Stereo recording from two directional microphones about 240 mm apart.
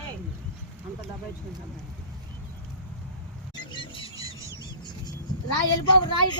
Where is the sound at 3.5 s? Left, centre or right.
Centre.